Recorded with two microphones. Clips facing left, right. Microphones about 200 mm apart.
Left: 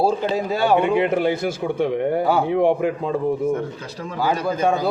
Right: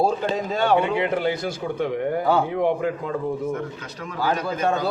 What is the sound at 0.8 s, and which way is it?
A man's voice, 20° left (ahead or behind).